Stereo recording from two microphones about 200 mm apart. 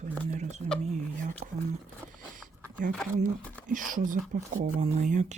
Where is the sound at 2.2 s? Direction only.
40° right (ahead or behind).